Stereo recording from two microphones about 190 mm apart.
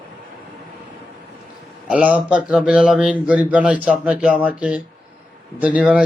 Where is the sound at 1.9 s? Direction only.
5° right (ahead or behind).